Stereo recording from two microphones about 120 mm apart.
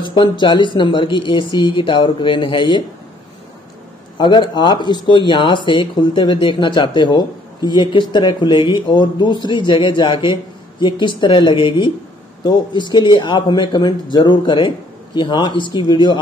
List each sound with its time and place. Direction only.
0.0 s speech: 40° left (ahead or behind)
4.2 s speech: 40° left (ahead or behind)